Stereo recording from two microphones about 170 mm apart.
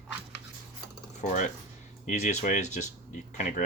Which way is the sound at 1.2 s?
45° left (ahead or behind).